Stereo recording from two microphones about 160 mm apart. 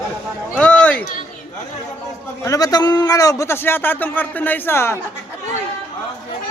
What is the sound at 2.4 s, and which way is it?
A man's voice, 20° left (ahead or behind).